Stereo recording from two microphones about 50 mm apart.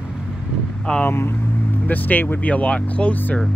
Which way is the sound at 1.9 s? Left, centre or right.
Left.